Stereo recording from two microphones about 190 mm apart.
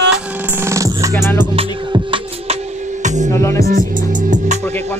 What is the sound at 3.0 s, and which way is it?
Music, 40° right (ahead or behind).